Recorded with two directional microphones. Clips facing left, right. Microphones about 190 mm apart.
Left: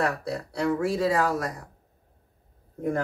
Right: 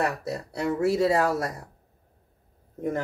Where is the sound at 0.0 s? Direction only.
20° right (ahead or behind).